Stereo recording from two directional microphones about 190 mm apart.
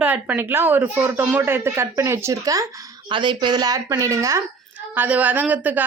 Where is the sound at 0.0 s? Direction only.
10° right (ahead or behind).